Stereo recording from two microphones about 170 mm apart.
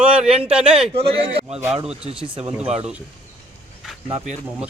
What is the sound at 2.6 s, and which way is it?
Speech, 40° right (ahead or behind).